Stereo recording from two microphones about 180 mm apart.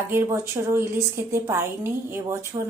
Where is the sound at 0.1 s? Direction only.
15° right (ahead or behind).